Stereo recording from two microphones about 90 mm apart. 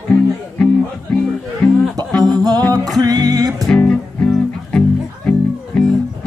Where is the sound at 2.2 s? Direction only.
45° right (ahead or behind).